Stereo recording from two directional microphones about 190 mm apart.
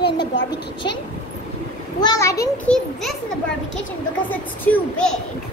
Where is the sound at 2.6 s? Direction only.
5° left (ahead or behind).